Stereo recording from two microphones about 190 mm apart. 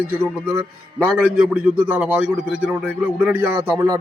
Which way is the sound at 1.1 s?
5° right (ahead or behind).